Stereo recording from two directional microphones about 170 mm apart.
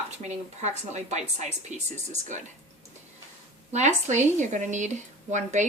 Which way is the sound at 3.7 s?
45° right (ahead or behind).